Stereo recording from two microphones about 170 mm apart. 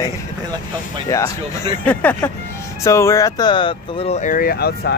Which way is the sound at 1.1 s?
15° left (ahead or behind).